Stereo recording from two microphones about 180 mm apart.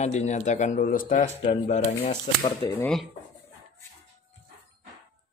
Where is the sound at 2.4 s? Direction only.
20° left (ahead or behind).